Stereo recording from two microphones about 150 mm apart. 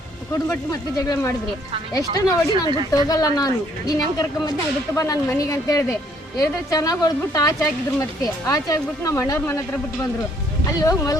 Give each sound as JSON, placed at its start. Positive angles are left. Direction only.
{"t": 0.4, "sound": "a woman's voice", "side_deg": 25}